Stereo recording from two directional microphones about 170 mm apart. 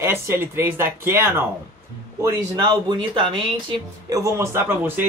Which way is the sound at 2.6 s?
30° right (ahead or behind).